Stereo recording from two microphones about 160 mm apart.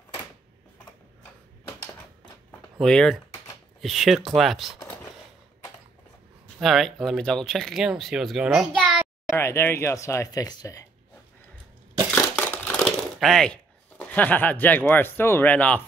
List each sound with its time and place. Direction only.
2.8 s speech: 5° left (ahead or behind)
6.6 s speech: centre (ahead or behind)
9.4 s speech: 15° left (ahead or behind)
12.4 s speech: 10° left (ahead or behind)